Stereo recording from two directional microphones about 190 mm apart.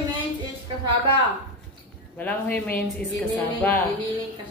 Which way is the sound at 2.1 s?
10° left (ahead or behind).